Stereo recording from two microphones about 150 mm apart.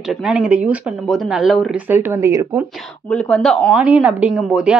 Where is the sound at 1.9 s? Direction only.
15° right (ahead or behind).